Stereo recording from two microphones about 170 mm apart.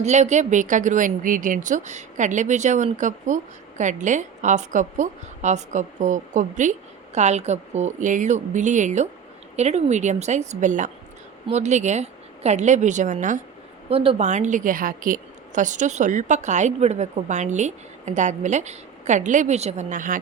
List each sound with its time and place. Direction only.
0.0 s speech: 40° right (ahead or behind)
13.9 s speech: 35° right (ahead or behind)